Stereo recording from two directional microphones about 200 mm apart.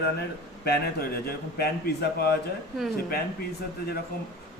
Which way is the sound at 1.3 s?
50° left (ahead or behind).